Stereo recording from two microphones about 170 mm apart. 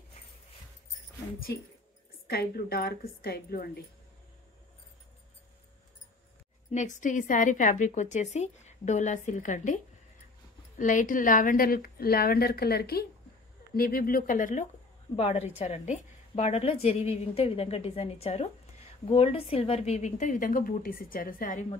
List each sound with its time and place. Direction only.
2.2 s a woman's voice: 65° left (ahead or behind)
6.7 s a woman's voice: 45° left (ahead or behind)
10.8 s a woman's voice: 50° left (ahead or behind)
15.1 s a woman's voice: 35° left (ahead or behind); by 21.6 s 55° left (ahead or behind)